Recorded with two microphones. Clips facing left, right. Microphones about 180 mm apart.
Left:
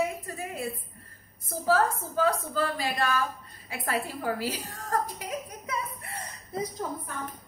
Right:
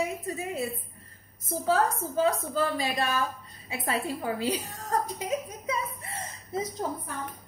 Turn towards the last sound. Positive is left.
turn(degrees=-25)  # may be behind; listen again after turning